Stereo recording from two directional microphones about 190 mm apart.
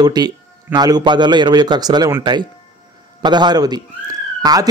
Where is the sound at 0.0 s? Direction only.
20° right (ahead or behind).